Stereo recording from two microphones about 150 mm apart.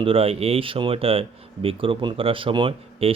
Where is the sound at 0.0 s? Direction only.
40° right (ahead or behind).